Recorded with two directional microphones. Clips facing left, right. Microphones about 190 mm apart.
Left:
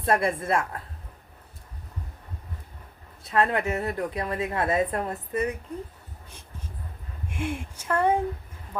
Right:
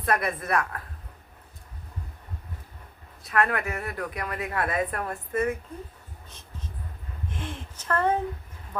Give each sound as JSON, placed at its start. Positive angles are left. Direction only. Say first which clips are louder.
{"t": 0.0, "sound": "a woman's voice", "louder": "left 3 dB", "side_deg": 25}
{"t": 3.2, "sound": "a woman's voice", "louder": "left 2 dB", "side_deg": 25}
{"t": 7.3, "sound": "speech", "louder": "left 6 dB", "side_deg": 10}